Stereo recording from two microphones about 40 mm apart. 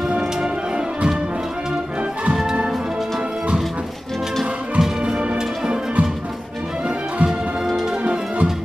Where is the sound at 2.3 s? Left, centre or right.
Centre.